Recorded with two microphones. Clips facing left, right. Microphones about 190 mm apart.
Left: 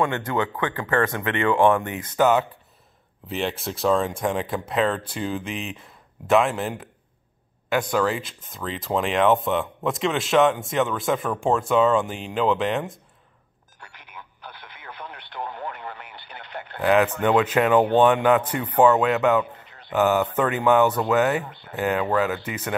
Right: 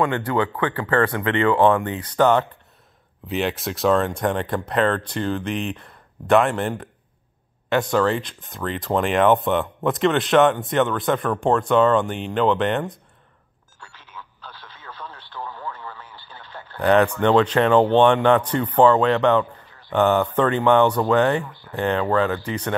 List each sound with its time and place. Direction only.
0.0 s speech: 20° left (ahead or behind)
2.1 s speech: 5° left (ahead or behind)
7.9 s speech: 5° left (ahead or behind)
13.9 s telephone: 15° left (ahead or behind)
14.5 s radio: 55° left (ahead or behind)
14.8 s radio: 20° left (ahead or behind)
15.6 s radio: 65° left (ahead or behind)
16.1 s radio: 20° left (ahead or behind)
16.4 s a sound: 20° left (ahead or behind)
16.8 s speech: 5° left (ahead or behind)
19.4 s a sound: 20° left (ahead or behind)
19.9 s speech: 5° left (ahead or behind)
21.5 s speech: 20° left (ahead or behind)
21.7 s speech: 10° left (ahead or behind)